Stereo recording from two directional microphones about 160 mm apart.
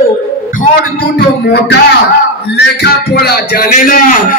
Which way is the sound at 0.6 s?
75° left (ahead or behind).